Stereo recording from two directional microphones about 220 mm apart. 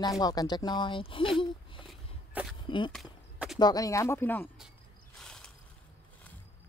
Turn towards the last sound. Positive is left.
turn(degrees=5)  # may be behind; listen again after turning